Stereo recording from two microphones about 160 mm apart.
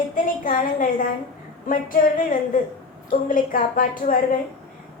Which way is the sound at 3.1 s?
60° left (ahead or behind).